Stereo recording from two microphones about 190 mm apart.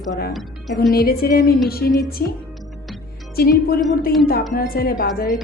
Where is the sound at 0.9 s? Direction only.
50° left (ahead or behind).